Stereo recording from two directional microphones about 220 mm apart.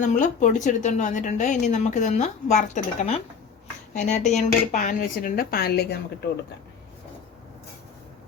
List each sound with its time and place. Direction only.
0.0 s speech: 35° left (ahead or behind)